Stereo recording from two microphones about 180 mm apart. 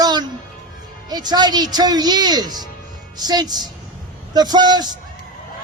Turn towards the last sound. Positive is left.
turn(degrees=-25)  # may be behind; listen again after turning